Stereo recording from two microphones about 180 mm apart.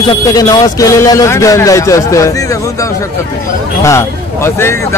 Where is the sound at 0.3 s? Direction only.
20° left (ahead or behind).